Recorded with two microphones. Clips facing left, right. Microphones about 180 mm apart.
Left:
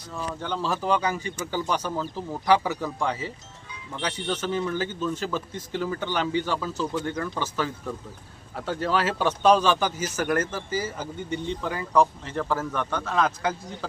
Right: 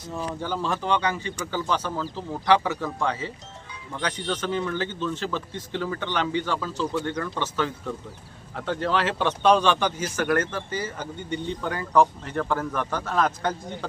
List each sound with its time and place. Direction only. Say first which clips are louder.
0.4 s a man's voice: left 1 dB; centre (ahead or behind)